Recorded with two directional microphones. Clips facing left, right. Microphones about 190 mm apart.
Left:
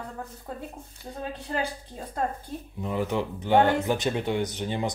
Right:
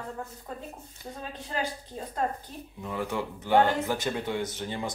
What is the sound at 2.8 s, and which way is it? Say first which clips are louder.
Speech: left 4 dB; 20° left (ahead or behind).